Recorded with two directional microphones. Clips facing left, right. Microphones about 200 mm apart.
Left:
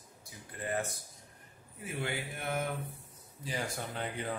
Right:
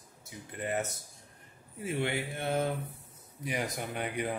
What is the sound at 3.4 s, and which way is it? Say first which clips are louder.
Speech: right 3 dB; 20° right (ahead or behind).